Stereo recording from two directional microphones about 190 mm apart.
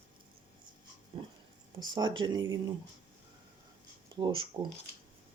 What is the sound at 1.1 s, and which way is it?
Pig, 30° right (ahead or behind).